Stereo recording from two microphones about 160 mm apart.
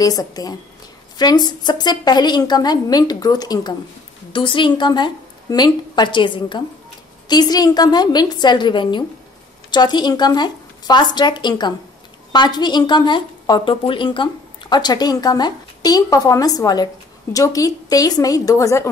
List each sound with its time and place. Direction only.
0.0 s a woman's voice: 25° left (ahead or behind)